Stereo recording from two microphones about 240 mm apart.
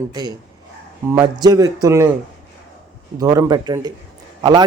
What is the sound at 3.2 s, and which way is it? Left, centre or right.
A man's voice, centre.